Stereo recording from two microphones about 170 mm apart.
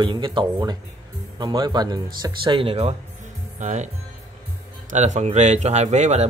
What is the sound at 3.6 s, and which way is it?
Speech, 45° right (ahead or behind).